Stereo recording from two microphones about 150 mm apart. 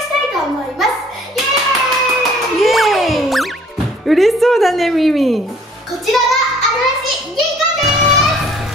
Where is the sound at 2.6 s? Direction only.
Centre (ahead or behind).